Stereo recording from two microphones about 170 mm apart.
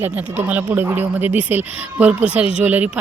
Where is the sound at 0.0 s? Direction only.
10° right (ahead or behind).